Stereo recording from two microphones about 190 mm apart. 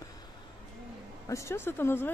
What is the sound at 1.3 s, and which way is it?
Speech, 15° left (ahead or behind).